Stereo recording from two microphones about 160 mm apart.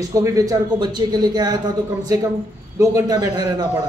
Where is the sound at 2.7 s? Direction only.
20° right (ahead or behind).